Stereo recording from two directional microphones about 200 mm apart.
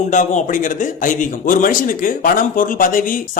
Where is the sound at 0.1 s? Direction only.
40° left (ahead or behind).